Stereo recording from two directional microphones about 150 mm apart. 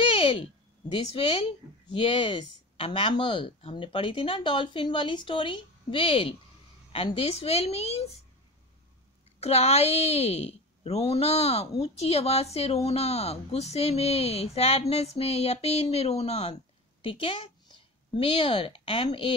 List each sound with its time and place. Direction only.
0.0 s speech: 35° left (ahead or behind)
9.4 s speech: 45° left (ahead or behind)